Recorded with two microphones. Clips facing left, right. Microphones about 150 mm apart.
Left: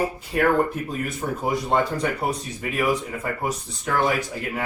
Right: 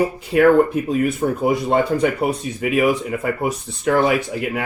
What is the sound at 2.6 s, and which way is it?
Speech, 80° right.